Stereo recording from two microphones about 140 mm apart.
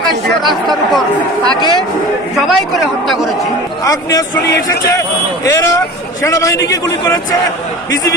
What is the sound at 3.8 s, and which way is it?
A man's voice, 25° left (ahead or behind).